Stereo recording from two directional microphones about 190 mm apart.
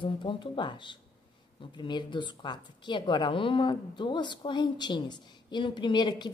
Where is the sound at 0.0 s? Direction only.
25° left (ahead or behind).